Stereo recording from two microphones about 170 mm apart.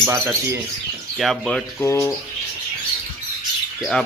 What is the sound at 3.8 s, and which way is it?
Speech, 5° left (ahead or behind).